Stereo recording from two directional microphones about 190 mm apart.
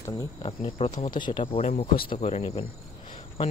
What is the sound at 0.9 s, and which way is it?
Speech, 45° left (ahead or behind).